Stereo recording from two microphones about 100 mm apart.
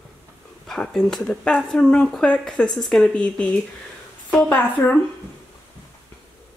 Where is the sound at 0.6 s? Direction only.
5° left (ahead or behind).